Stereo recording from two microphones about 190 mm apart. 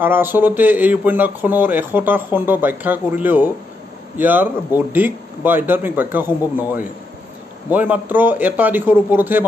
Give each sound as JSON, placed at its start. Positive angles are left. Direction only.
{"t": 0.0, "sound": "speech", "side_deg": -10}